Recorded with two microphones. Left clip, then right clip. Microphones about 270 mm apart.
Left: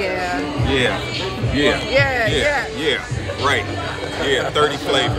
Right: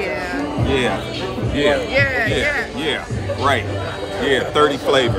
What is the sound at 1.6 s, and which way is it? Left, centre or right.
Speech, centre.